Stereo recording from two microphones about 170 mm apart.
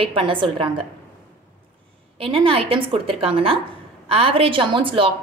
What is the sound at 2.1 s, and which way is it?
A woman's voice, 30° right (ahead or behind).